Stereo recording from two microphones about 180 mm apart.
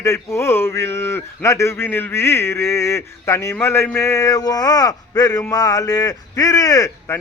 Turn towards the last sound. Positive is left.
turn(degrees=15)  # may be behind; listen again after turning